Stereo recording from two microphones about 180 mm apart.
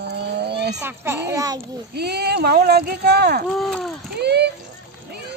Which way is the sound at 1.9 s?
65° right (ahead or behind).